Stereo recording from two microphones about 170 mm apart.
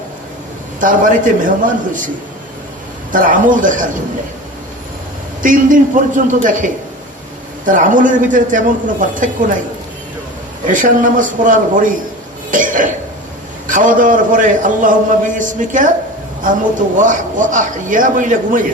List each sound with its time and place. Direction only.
0.8 s a man's voice: 50° right (ahead or behind)
3.1 s a man's voice: 50° right (ahead or behind)
5.4 s a man's voice: 50° right (ahead or behind)
10.7 s a man's voice: 50° right (ahead or behind)
17.0 s a man's voice: 50° right (ahead or behind)